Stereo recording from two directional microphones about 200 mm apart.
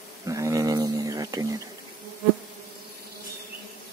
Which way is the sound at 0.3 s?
15° right (ahead or behind).